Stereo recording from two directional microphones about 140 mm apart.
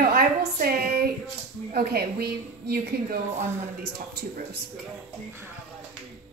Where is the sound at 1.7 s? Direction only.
90° right.